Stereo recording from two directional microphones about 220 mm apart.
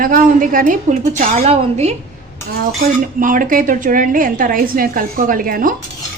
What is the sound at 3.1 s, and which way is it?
Speech, 40° right (ahead or behind).